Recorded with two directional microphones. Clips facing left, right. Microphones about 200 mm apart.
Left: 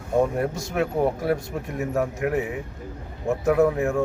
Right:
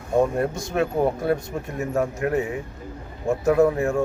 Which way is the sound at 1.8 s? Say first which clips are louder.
Right 1 dB; 5° left (ahead or behind).